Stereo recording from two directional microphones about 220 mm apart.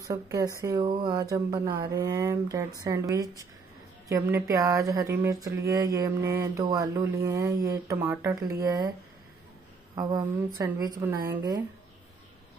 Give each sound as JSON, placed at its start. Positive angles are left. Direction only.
{"t": 0.1, "sound": "speech", "side_deg": -15}
{"t": 9.9, "sound": "speech", "side_deg": -15}